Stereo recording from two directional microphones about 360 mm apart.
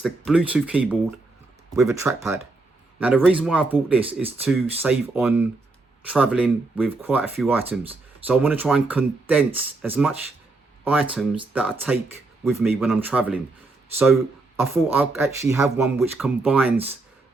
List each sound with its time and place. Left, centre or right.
0.0 s speech: centre